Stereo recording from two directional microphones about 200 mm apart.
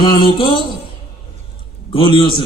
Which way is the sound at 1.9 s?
25° left (ahead or behind).